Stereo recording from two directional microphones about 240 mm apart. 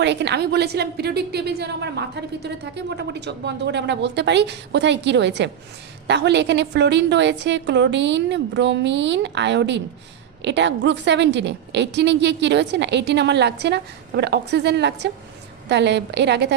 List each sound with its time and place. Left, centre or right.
0.0 s a woman's voice: right